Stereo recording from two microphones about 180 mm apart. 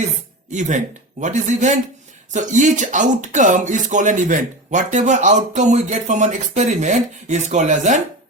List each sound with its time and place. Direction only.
0.5 s speech: 45° right (ahead or behind)